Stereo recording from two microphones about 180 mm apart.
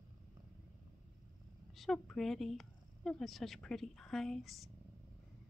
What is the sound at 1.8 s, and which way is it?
Speech, centre (ahead or behind).